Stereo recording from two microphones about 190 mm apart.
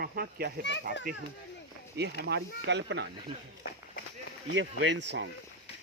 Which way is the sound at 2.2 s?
60° right (ahead or behind).